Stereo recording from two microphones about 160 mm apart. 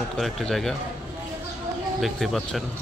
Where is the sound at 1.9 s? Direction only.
Centre (ahead or behind).